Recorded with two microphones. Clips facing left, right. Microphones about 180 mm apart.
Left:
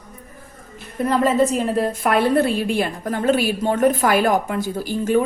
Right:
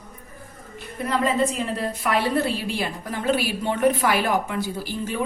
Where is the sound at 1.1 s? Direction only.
45° left (ahead or behind).